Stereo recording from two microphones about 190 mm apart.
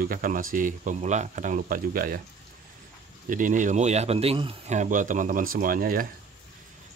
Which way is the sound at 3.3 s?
45° right (ahead or behind).